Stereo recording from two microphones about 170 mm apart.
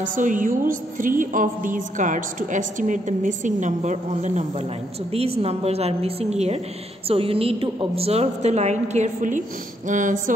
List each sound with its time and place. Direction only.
0.0 s music: 50° right (ahead or behind)
5.1 s a woman's voice: 35° right (ahead or behind)
9.8 s music: 50° right (ahead or behind)